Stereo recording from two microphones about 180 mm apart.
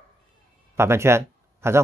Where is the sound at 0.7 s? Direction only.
15° right (ahead or behind).